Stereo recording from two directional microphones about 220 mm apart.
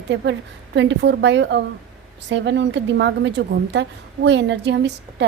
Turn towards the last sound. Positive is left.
turn(degrees=-50)  # may be behind; listen again after turning